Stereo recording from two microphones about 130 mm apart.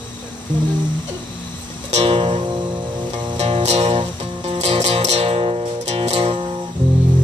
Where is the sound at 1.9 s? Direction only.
50° right (ahead or behind).